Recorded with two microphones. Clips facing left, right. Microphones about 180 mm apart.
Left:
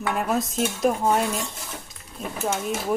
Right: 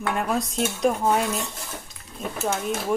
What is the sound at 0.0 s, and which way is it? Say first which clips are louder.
Dishes: left 1 dB; centre (ahead or behind).